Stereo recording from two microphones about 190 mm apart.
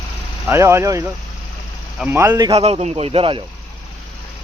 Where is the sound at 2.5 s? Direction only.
30° right (ahead or behind).